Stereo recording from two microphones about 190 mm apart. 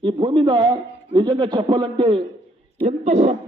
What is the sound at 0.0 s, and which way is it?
Speech, 25° right (ahead or behind).